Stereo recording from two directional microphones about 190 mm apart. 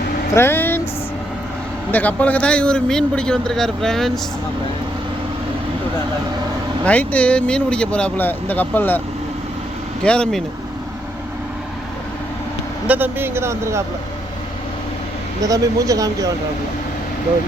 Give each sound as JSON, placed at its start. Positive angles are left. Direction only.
{"t": 0.3, "sound": "speech", "side_deg": 10}
{"t": 1.9, "sound": "a man's voice", "side_deg": 10}
{"t": 6.8, "sound": "speech", "side_deg": 5}
{"t": 10.0, "sound": "a man's voice", "side_deg": 5}
{"t": 12.9, "sound": "speech", "side_deg": -10}
{"t": 15.4, "sound": "speech", "side_deg": -20}